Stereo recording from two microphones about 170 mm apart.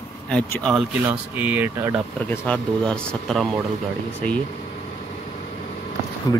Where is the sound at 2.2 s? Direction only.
10° left (ahead or behind).